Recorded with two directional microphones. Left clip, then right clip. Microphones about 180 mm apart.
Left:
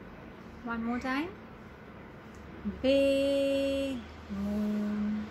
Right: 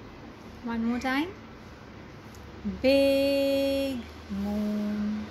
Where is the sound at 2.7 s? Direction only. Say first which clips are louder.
Right 4 dB; 10° left (ahead or behind).